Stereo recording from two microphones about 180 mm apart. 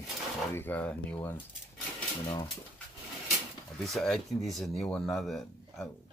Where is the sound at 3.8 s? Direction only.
Centre (ahead or behind).